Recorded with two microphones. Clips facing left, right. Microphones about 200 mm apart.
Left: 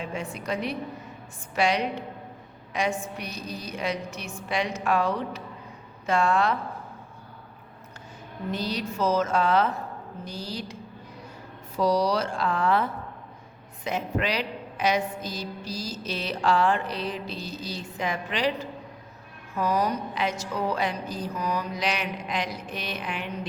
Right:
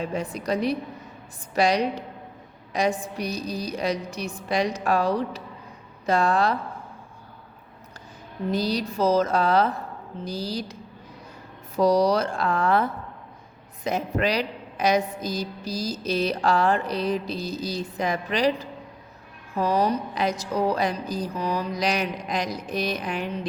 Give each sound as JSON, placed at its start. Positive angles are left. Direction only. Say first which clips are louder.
{"t": 0.0, "sound": "a woman's voice", "louder": "right 4 dB", "side_deg": -35}
{"t": 8.4, "sound": "a woman's voice", "louder": "right 5 dB", "side_deg": -35}
{"t": 11.8, "sound": "speech", "louder": "right 4 dB", "side_deg": -45}
{"t": 13.8, "sound": "a woman's voice", "louder": "right 3 dB", "side_deg": -40}
{"t": 19.5, "sound": "a woman's voice", "louder": "right 3 dB", "side_deg": -30}